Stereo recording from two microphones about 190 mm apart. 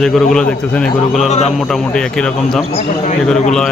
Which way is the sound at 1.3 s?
35° left (ahead or behind).